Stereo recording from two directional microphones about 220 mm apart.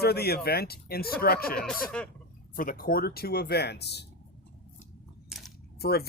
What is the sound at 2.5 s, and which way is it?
Speech, 40° left (ahead or behind).